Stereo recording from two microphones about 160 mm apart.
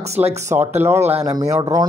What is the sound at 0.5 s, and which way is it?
Speech, 15° right (ahead or behind).